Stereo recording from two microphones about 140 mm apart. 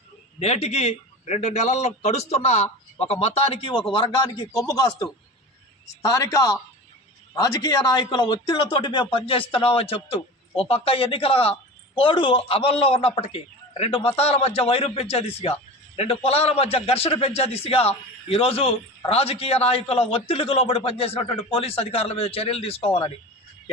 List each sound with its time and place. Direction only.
0.3 s a man's voice: 50° left (ahead or behind)